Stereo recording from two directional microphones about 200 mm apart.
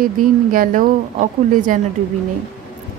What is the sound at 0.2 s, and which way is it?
A woman's voice, 40° right (ahead or behind).